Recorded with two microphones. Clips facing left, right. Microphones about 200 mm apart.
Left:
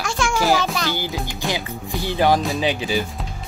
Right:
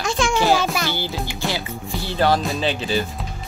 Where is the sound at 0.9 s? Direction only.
15° left (ahead or behind).